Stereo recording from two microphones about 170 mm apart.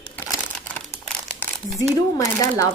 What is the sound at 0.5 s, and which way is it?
Crumpling, 10° left (ahead or behind).